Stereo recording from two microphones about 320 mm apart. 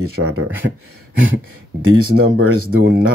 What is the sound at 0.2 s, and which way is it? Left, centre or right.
Speech, right.